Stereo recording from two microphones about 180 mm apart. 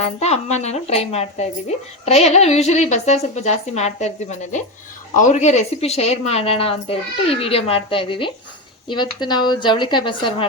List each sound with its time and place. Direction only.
0.0 s speech: 35° left (ahead or behind)